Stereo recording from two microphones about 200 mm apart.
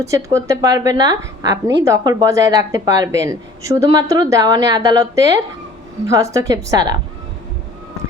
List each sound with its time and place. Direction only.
0.0 s speech: 15° right (ahead or behind)